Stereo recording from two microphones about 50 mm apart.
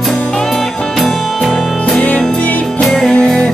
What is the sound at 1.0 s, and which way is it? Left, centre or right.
Music, centre.